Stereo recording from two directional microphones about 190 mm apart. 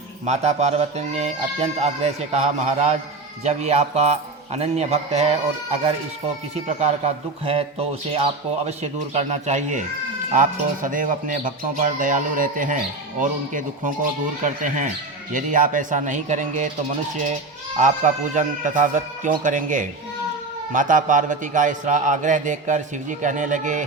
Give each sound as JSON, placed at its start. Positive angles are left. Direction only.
{"t": 0.3, "sound": "speech", "side_deg": -35}
{"t": 15.3, "sound": "speech", "side_deg": -45}
{"t": 17.7, "sound": "speech", "side_deg": -40}